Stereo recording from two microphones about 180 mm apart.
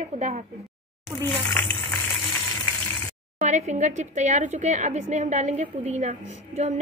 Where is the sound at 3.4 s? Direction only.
40° right (ahead or behind).